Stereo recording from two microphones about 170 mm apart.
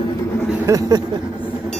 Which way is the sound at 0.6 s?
20° right (ahead or behind).